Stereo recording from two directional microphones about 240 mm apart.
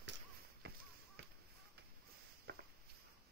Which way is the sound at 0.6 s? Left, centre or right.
Right.